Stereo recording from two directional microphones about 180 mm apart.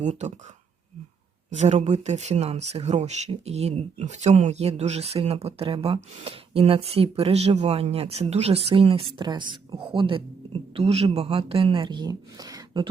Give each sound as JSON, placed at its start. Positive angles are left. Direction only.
{"t": 0.0, "sound": "speech", "side_deg": -40}
{"t": 1.5, "sound": "speech", "side_deg": -40}